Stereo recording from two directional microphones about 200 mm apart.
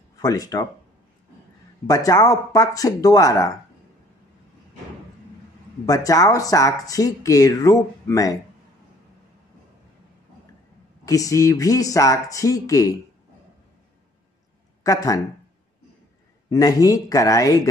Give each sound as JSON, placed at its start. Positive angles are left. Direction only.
{"t": 0.1, "sound": "speech", "side_deg": 15}
{"t": 1.9, "sound": "speech", "side_deg": 15}
{"t": 5.9, "sound": "speech", "side_deg": 20}
{"t": 11.1, "sound": "speech", "side_deg": 15}
{"t": 14.8, "sound": "speech", "side_deg": 15}
{"t": 16.4, "sound": "speech", "side_deg": 20}